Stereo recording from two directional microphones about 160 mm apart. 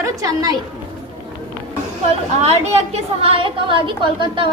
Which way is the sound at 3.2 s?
35° right (ahead or behind).